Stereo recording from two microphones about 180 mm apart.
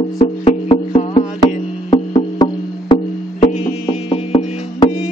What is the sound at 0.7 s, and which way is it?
Music, 35° left (ahead or behind).